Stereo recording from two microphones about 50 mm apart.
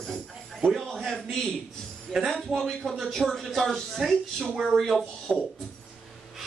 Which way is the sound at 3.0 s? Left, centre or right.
Centre.